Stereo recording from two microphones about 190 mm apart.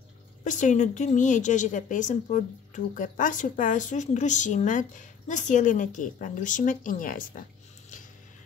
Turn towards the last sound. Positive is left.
turn(degrees=45)  # may be behind; listen again after turning